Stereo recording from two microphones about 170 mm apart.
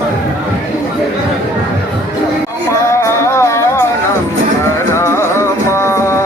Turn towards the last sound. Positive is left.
turn(degrees=15)  # may be behind; listen again after turning